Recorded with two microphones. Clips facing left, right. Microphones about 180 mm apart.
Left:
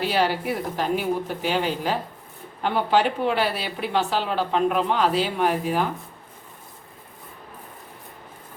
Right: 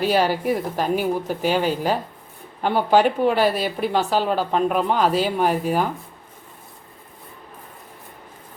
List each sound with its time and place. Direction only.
0.0 s speech: 45° right (ahead or behind)